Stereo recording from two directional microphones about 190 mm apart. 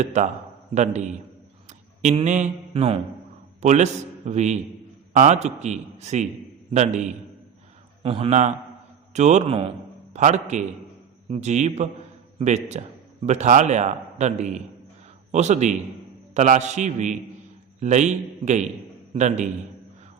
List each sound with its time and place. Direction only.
0.0 s a man's voice: 40° right (ahead or behind)